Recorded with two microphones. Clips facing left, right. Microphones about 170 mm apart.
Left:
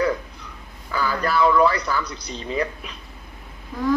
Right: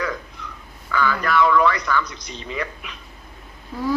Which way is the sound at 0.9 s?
35° left (ahead or behind).